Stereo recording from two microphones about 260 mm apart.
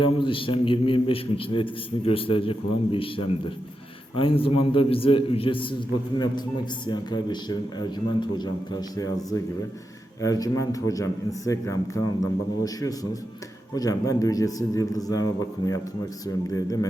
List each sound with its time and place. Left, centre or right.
0.0 s a man's voice: centre
6.8 s a man's voice: centre